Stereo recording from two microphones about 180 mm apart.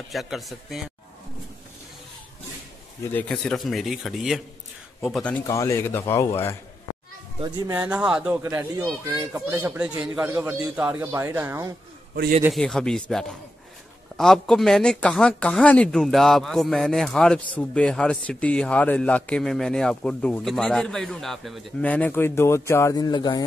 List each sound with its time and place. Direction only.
0.1 s speech: centre (ahead or behind)
3.1 s speech: 10° left (ahead or behind)
5.5 s speech: 15° left (ahead or behind)
7.3 s speech: 25° right (ahead or behind)
7.7 s a child's voice: 10° right (ahead or behind)
8.4 s a child's voice: 15° right (ahead or behind)
12.5 s speech: 5° left (ahead or behind); by 23.4 s 20° left (ahead or behind)